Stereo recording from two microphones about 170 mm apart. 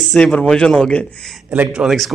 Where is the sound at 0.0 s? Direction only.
5° left (ahead or behind).